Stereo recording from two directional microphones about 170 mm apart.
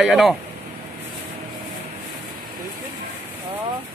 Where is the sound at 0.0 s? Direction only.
Centre (ahead or behind).